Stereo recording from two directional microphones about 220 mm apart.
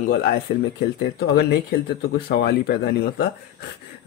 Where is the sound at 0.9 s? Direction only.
45° left (ahead or behind).